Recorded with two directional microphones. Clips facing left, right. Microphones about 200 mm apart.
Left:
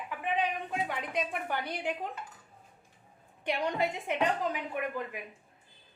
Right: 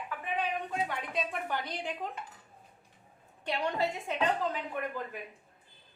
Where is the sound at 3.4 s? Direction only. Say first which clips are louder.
Left 1 dB; 20° left (ahead or behind).